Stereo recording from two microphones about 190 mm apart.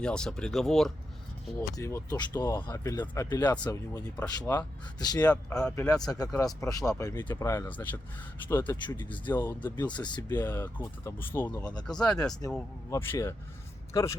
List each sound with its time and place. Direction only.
0.0 s speech: 5° left (ahead or behind)
1.7 s speech: 15° left (ahead or behind)
5.3 s speech: 5° left (ahead or behind)
5.9 s speech: 20° left (ahead or behind)
9.7 s speech: 25° left (ahead or behind)
10.5 s speech: 10° left (ahead or behind)
11.6 s speech: 20° left (ahead or behind)